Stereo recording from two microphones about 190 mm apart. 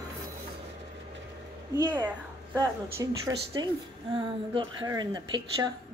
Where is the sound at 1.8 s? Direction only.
20° right (ahead or behind).